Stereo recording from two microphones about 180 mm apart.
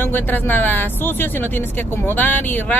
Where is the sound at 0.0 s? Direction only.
10° left (ahead or behind).